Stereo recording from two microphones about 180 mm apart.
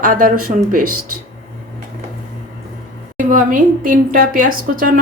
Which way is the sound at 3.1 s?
50° right (ahead or behind).